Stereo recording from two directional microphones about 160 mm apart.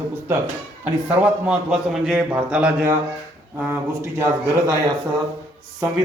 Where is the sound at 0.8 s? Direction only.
10° right (ahead or behind).